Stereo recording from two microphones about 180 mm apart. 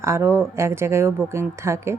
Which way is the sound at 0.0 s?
15° right (ahead or behind).